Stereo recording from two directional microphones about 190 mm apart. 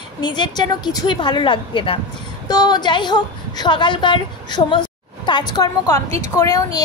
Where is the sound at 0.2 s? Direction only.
25° left (ahead or behind).